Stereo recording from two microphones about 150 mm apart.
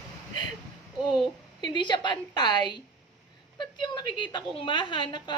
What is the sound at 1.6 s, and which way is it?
A woman's voice, 30° left (ahead or behind).